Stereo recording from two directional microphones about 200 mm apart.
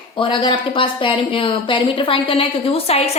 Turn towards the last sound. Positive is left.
turn(degrees=30)  # may be behind; listen again after turning